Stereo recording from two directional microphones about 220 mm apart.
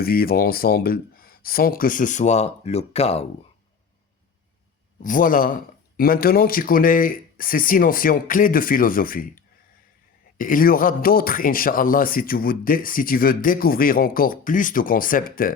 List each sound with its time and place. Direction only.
0.0 s a man's voice: 45° left (ahead or behind); by 3.2 s 30° left (ahead or behind)
5.0 s a man's voice: 40° left (ahead or behind)